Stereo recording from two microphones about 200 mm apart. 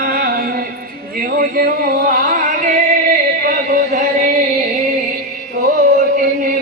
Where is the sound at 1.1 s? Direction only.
50° right (ahead or behind).